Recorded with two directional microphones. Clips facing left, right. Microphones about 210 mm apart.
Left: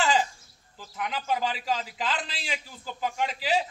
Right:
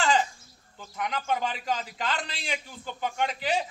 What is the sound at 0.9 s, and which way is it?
A man's voice, centre (ahead or behind).